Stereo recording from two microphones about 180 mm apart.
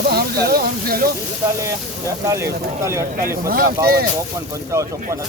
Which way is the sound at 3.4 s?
55° right (ahead or behind).